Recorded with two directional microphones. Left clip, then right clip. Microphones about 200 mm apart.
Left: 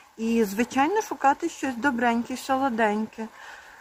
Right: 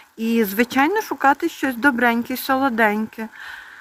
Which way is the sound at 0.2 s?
15° right (ahead or behind).